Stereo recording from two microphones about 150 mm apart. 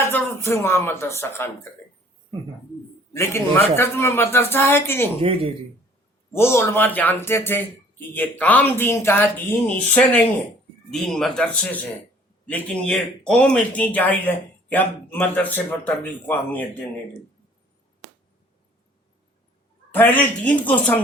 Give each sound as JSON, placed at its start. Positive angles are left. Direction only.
{"t": 0.1, "sound": "speech", "side_deg": 20}
{"t": 3.1, "sound": "speech", "side_deg": 20}
{"t": 6.3, "sound": "speech", "side_deg": 15}
{"t": 19.9, "sound": "speech", "side_deg": 10}